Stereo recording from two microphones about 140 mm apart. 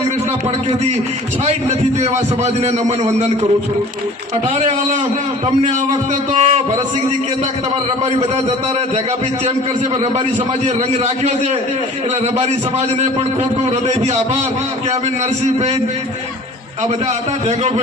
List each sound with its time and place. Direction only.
2.0 s a man's voice: 50° right (ahead or behind)
6.3 s a man's voice: 50° right (ahead or behind)
13.7 s a man's voice: 50° right (ahead or behind)